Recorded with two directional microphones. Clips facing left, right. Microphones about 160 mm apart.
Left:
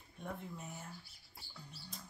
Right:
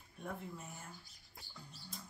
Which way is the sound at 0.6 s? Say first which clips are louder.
Left 3 dB; centre (ahead or behind).